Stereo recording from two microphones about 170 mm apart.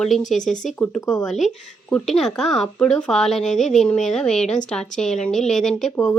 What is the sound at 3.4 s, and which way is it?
Speech, 45° left (ahead or behind).